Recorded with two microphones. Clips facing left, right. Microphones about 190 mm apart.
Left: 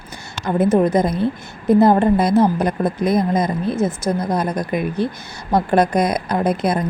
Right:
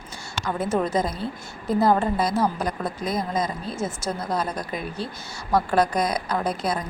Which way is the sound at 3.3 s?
60° left (ahead or behind).